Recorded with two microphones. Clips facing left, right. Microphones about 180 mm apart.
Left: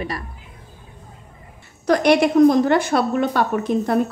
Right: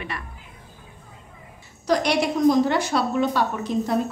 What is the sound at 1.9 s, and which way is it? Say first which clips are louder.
A woman's voice: left 6 dB; 55° left (ahead or behind).